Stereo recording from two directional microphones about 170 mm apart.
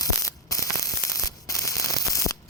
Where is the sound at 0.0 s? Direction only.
20° left (ahead or behind).